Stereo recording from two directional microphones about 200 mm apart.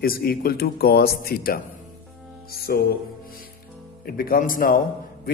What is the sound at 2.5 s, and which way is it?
Music, 50° left (ahead or behind).